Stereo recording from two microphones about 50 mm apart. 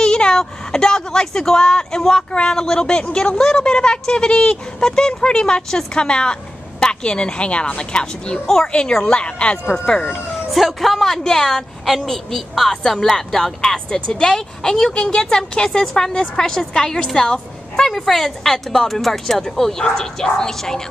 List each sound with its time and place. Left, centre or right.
0.0 s a woman's voice: centre
10.5 s a woman's voice: centre